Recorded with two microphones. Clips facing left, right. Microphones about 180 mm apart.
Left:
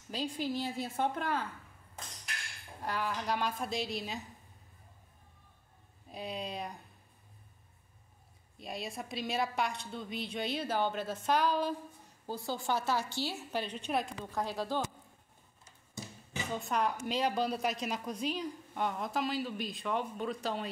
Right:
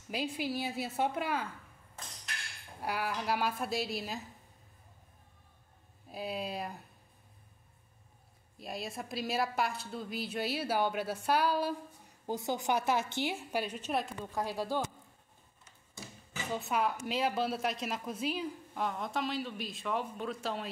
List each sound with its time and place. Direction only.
0.1 s a woman's voice: 10° right (ahead or behind)
2.8 s a woman's voice: 10° right (ahead or behind)
6.0 s a woman's voice: 5° right (ahead or behind)
8.5 s a woman's voice: centre (ahead or behind)
12.3 s a woman's voice: 20° right (ahead or behind)
16.5 s a woman's voice: 5° right (ahead or behind)